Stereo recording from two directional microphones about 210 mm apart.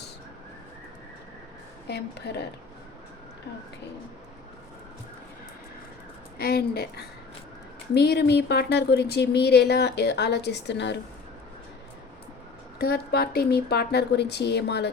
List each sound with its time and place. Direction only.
1.9 s speech: 50° left (ahead or behind)
6.4 s speech: 45° left (ahead or behind)
12.8 s speech: 50° left (ahead or behind)